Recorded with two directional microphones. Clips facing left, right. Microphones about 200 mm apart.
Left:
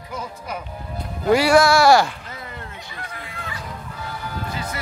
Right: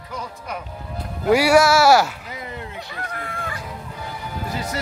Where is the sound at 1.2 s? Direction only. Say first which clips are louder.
Even; 10° right (ahead or behind).